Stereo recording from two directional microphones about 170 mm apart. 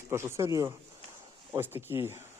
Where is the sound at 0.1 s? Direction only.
15° right (ahead or behind).